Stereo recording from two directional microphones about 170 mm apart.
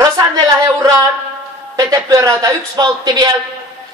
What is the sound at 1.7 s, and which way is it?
A man's voice, 20° right (ahead or behind).